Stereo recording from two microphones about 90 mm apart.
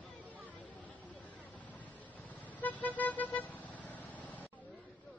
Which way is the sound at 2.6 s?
20° left (ahead or behind).